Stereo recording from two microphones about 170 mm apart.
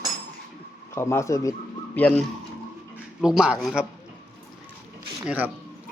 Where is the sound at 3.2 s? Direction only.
5° right (ahead or behind).